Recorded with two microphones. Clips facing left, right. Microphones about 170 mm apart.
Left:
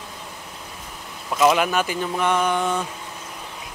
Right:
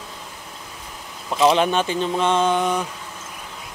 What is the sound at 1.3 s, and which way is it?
Speech, 20° right (ahead or behind).